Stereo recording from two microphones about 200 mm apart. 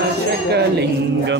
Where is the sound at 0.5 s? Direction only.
55° right (ahead or behind).